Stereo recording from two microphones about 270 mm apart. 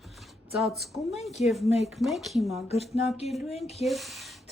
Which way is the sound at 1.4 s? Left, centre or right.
Left.